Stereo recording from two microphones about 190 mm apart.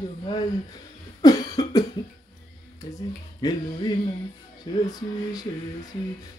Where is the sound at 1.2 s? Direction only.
20° left (ahead or behind).